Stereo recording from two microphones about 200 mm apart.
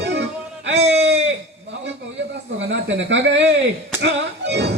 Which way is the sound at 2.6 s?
65° right (ahead or behind).